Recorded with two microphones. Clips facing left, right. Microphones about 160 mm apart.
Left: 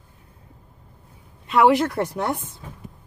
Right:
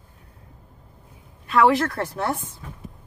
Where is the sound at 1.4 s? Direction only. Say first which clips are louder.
Left 1 dB; 20° left (ahead or behind).